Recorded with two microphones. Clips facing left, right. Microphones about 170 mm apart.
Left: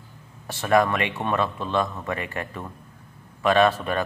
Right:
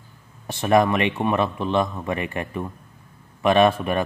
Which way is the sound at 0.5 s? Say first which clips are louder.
Right 2 dB; 20° right (ahead or behind).